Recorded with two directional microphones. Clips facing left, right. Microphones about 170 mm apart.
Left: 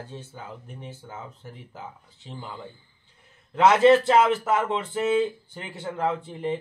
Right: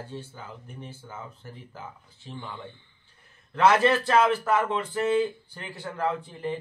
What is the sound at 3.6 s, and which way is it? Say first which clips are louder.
A man's voice: left 4 dB; 20° left (ahead or behind).